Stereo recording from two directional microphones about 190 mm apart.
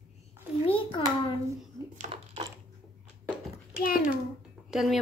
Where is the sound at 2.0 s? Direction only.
30° right (ahead or behind).